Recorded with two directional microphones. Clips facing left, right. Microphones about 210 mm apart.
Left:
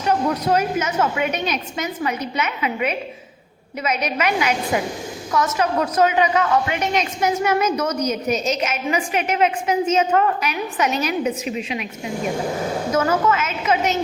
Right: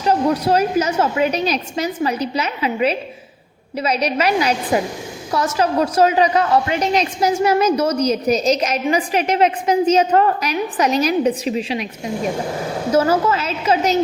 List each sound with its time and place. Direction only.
0.0 s a woman's voice: 30° right (ahead or behind)
12.9 s a woman's voice: 30° right (ahead or behind)